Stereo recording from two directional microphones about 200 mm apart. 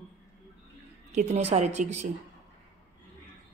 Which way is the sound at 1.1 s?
35° right (ahead or behind).